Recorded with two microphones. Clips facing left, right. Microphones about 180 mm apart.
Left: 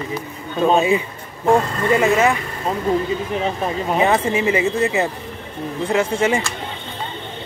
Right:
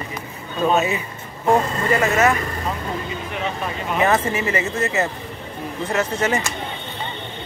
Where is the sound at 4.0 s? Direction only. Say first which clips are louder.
Left 1 dB; 15° left (ahead or behind).